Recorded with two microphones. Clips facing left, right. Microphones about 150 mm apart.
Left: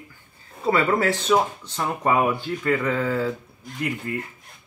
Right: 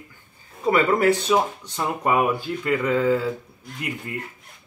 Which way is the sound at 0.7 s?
15° right (ahead or behind).